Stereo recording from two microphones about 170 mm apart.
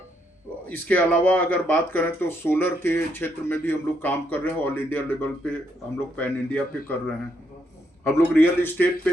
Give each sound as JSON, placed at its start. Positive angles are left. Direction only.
{"t": 0.7, "sound": "speech", "side_deg": 10}
{"t": 8.0, "sound": "speech", "side_deg": 15}